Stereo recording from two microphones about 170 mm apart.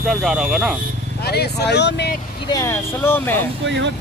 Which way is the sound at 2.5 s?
15° left (ahead or behind).